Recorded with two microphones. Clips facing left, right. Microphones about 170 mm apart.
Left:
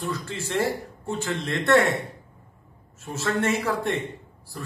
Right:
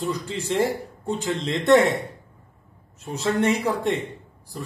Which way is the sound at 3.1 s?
15° right (ahead or behind).